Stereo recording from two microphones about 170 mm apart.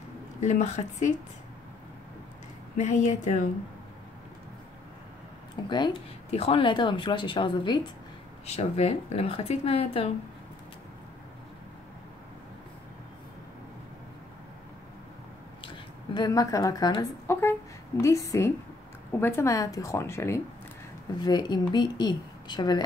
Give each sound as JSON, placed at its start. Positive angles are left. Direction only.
{"t": 0.4, "sound": "a woman's voice", "side_deg": 45}
{"t": 2.8, "sound": "a woman's voice", "side_deg": 45}
{"t": 5.6, "sound": "a woman's voice", "side_deg": 25}
{"t": 8.5, "sound": "speech", "side_deg": 35}
{"t": 15.6, "sound": "a woman's voice", "side_deg": 25}